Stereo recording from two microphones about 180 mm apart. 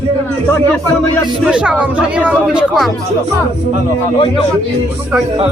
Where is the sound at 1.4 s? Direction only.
5° right (ahead or behind).